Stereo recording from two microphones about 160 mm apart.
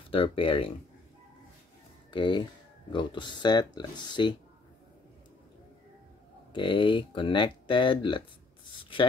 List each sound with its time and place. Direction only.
0.1 s speech: 35° left (ahead or behind)
2.0 s speech: 30° left (ahead or behind)
6.5 s speech: 30° left (ahead or behind)